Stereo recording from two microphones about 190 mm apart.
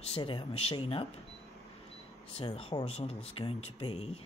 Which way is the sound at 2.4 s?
30° left (ahead or behind).